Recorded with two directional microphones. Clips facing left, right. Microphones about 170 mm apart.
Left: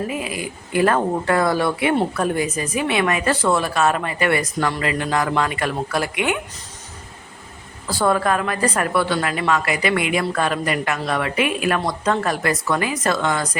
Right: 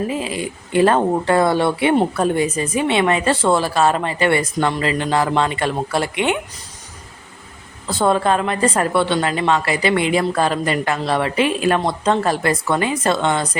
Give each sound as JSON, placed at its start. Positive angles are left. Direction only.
{"t": 0.1, "sound": "speech", "side_deg": -30}
{"t": 7.9, "sound": "speech", "side_deg": -25}